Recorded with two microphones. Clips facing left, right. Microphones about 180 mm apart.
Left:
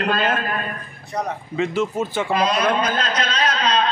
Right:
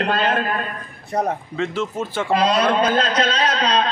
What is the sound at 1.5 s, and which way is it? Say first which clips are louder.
Speech: left 6 dB; 10° left (ahead or behind).